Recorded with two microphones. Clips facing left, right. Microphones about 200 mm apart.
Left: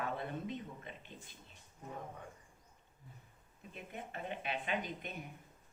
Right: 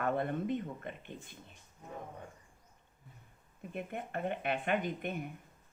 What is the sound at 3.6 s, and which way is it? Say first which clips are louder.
A woman's voice: right 7 dB; 55° right (ahead or behind).